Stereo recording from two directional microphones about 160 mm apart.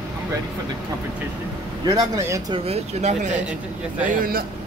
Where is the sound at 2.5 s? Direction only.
40° right (ahead or behind).